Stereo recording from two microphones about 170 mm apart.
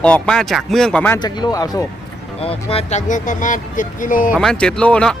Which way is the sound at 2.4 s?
35° left (ahead or behind).